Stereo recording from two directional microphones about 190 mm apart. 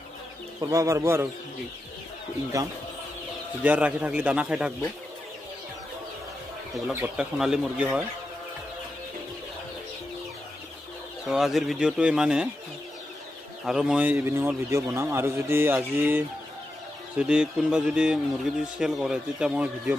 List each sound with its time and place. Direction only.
0.6 s a man's voice: 15° right (ahead or behind)
2.5 s a man's voice: 15° right (ahead or behind)
6.9 s speech: 5° right (ahead or behind)
11.2 s speech: centre (ahead or behind)
13.7 s a man's voice: 5° right (ahead or behind)